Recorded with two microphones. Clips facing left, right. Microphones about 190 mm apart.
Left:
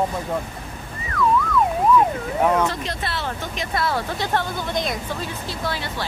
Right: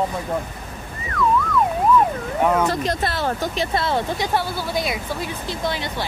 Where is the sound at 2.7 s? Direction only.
40° right (ahead or behind).